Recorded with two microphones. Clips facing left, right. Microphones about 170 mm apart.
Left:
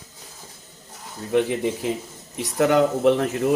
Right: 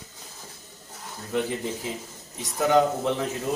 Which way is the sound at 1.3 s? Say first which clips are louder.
Left 6 dB; 80° left.